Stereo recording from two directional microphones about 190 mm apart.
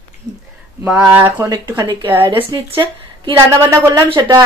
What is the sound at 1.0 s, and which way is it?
A woman's voice, 10° right (ahead or behind).